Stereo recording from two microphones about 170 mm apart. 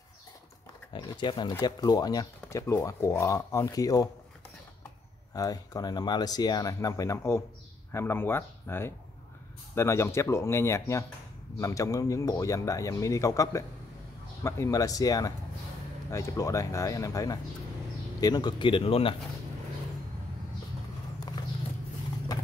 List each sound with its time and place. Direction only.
0.9 s speech: 25° left (ahead or behind)
5.3 s speech: 20° left (ahead or behind)